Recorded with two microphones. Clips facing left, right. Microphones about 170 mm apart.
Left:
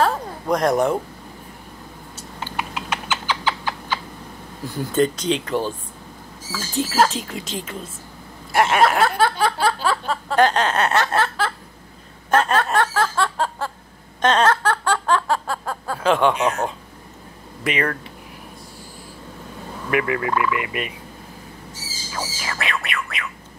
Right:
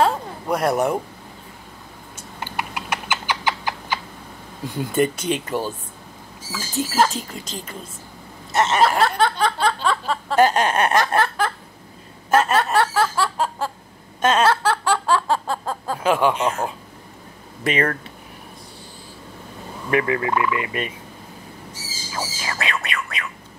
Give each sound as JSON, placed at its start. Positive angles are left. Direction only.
{"t": 0.5, "sound": "speech", "side_deg": -5}
{"t": 2.7, "sound": "cat", "side_deg": -10}
{"t": 4.6, "sound": "speech", "side_deg": -15}
{"t": 6.7, "sound": "a sound", "side_deg": 0}
{"t": 12.3, "sound": "snicker", "side_deg": -10}
{"t": 14.2, "sound": "a sound", "side_deg": -10}
{"t": 16.4, "sound": "speech", "side_deg": -5}
{"t": 17.6, "sound": "speech", "side_deg": -40}
{"t": 19.9, "sound": "fowl", "side_deg": -30}
{"t": 22.1, "sound": "squawk", "side_deg": -20}